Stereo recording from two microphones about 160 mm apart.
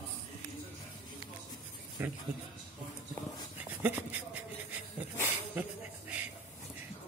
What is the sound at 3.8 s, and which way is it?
Dog, 10° right (ahead or behind).